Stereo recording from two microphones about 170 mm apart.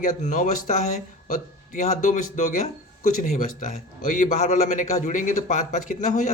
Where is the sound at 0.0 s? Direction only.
50° left (ahead or behind).